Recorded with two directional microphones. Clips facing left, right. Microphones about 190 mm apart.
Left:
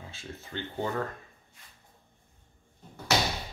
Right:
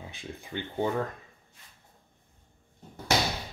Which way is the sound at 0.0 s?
15° right (ahead or behind).